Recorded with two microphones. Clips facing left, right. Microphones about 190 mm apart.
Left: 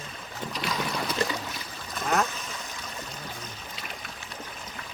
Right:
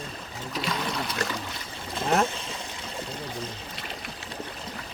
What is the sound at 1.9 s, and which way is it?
Boat, 30° right (ahead or behind).